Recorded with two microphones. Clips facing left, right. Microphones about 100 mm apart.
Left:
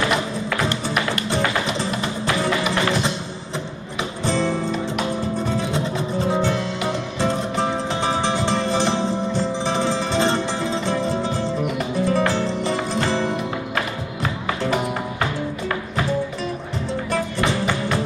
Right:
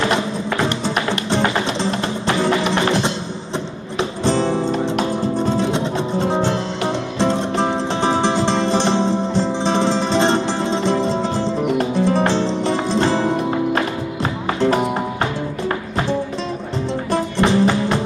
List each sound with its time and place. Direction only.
0.0 s music: 25° right (ahead or behind)
4.2 s music: 25° right (ahead or behind)
17.1 s music: 30° right (ahead or behind)